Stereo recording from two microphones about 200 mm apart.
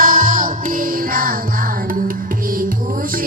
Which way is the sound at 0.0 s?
40° right (ahead or behind).